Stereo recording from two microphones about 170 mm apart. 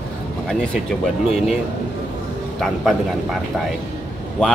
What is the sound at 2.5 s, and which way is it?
Speech, centre (ahead or behind).